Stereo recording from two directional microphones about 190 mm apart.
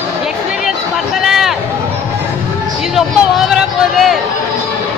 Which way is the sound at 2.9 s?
Centre (ahead or behind).